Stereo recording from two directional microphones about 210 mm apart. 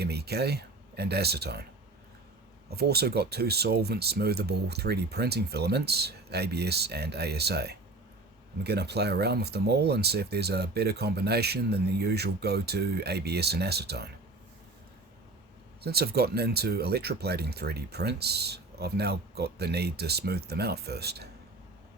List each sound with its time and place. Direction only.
0.0 s speech: 50° right (ahead or behind)
2.6 s speech: 50° right (ahead or behind)
15.8 s speech: 50° right (ahead or behind)